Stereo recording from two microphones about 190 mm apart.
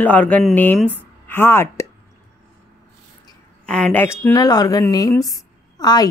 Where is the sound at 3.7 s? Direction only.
5° left (ahead or behind).